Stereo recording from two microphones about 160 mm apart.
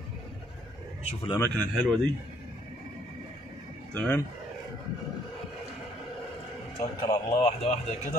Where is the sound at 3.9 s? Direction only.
10° left (ahead or behind).